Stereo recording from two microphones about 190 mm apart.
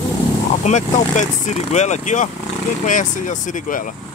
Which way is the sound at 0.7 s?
40° left (ahead or behind).